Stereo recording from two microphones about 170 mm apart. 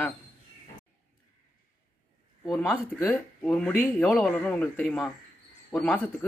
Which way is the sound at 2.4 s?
5° left (ahead or behind).